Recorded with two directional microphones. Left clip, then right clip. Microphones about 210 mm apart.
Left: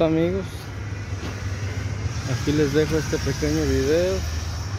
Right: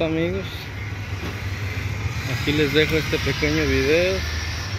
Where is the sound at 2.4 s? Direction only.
15° left (ahead or behind).